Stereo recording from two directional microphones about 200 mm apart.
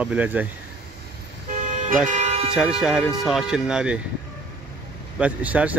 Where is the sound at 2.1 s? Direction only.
35° right (ahead or behind).